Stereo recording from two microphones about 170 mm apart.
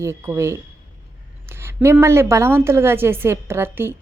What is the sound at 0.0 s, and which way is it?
A woman's voice, 15° right (ahead or behind).